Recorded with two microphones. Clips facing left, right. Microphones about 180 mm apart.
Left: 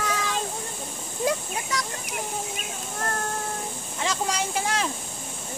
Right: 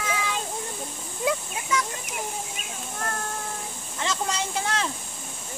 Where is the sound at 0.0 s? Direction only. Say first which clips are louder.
Left 1 dB; 40° left (ahead or behind).